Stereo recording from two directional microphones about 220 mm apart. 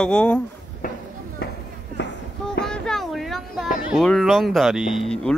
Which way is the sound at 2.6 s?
5° left (ahead or behind).